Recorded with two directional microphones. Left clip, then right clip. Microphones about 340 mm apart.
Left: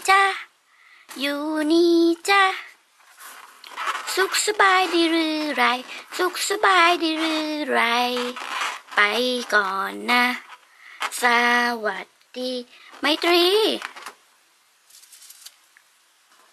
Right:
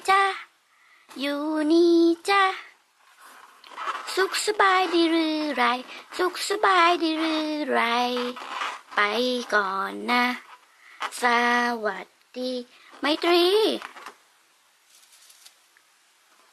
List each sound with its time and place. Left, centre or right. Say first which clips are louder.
0.0 s a sound: left 3 dB; centre
1.5 s child singing: left 1 dB; centre
3.2 s speech: left 6 dB; centre